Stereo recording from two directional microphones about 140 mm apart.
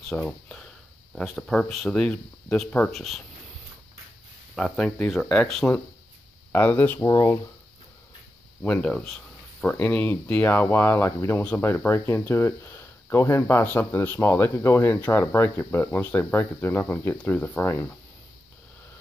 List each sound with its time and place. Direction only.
0.1 s speech: 5° left (ahead or behind)
4.6 s speech: 5° left (ahead or behind)
7.0 s speech: 25° left (ahead or behind)
8.6 s speech: 10° left (ahead or behind)